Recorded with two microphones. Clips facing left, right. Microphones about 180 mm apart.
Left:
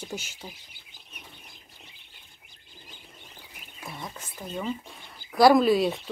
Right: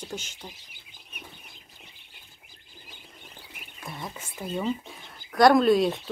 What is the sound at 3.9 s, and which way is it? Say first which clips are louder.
Speech: right 1 dB; centre (ahead or behind).